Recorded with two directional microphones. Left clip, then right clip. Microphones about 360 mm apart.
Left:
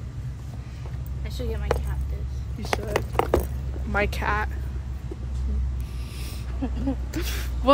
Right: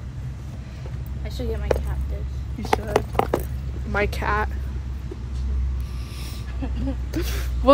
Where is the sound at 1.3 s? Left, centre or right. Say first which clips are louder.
Right 3 dB; centre.